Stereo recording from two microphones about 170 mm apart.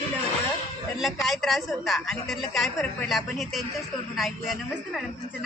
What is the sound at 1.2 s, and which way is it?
A woman's voice, centre (ahead or behind).